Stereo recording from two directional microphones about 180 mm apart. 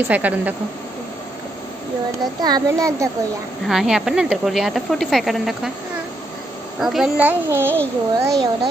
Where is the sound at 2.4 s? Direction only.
20° right (ahead or behind).